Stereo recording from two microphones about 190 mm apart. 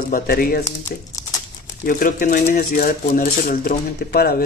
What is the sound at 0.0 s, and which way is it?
Speech, 50° left (ahead or behind).